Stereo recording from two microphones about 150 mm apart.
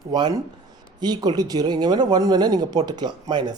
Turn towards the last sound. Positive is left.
turn(degrees=-30)  # may be behind; listen again after turning